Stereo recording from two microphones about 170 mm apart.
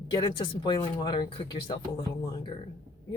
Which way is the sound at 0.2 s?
25° left (ahead or behind).